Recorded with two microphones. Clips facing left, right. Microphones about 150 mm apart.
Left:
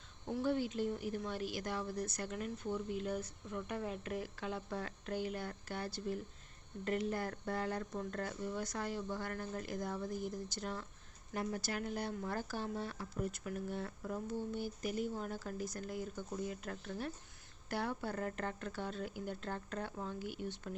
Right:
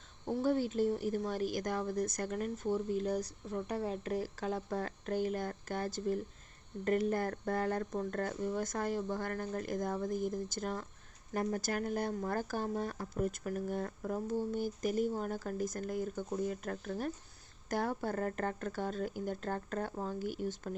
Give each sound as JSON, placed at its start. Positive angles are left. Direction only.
{"t": 0.3, "sound": "a woman's voice", "side_deg": -35}